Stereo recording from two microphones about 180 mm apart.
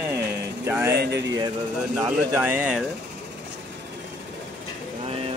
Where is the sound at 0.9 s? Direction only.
65° right (ahead or behind).